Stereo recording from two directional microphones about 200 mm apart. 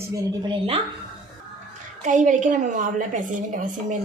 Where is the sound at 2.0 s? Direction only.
40° right (ahead or behind).